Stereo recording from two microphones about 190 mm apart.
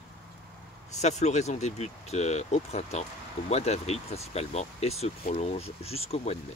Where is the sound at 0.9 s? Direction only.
35° left (ahead or behind).